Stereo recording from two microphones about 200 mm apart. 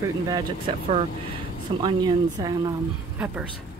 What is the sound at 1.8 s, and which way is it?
Speech, 20° right (ahead or behind).